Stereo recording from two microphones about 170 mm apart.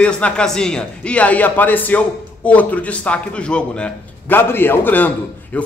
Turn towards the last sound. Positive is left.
turn(degrees=10)  # may be behind; listen again after turning